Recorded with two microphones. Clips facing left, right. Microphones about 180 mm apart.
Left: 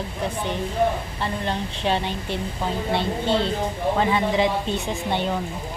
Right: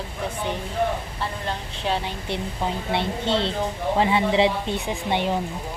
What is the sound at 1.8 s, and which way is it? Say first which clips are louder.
Speech: left 2 dB; 5° right (ahead or behind).